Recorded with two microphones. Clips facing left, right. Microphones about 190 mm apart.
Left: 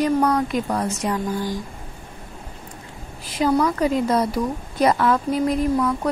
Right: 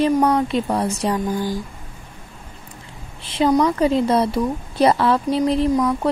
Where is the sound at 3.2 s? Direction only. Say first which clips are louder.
Right 3 dB; 25° right (ahead or behind).